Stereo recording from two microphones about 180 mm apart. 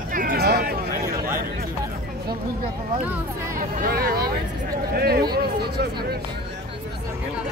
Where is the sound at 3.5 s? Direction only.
55° right (ahead or behind).